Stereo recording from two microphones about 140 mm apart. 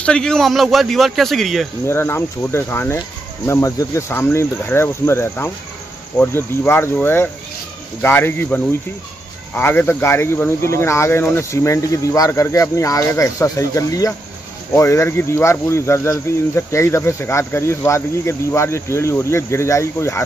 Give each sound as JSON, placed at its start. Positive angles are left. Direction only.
{"t": 0.0, "sound": "a man's voice", "side_deg": 5}
{"t": 1.9, "sound": "speech", "side_deg": 20}